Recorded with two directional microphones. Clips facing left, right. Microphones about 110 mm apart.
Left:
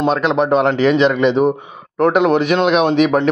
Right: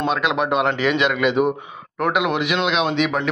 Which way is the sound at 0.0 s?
35° left (ahead or behind).